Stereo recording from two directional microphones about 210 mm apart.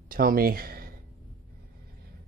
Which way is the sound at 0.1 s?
45° right (ahead or behind).